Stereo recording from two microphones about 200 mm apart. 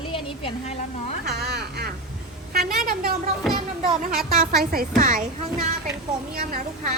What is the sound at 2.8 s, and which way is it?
Speech, 50° right (ahead or behind).